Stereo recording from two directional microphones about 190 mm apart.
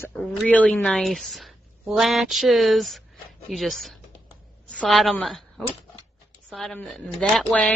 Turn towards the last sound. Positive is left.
turn(degrees=0)  # may be behind; listen again after turning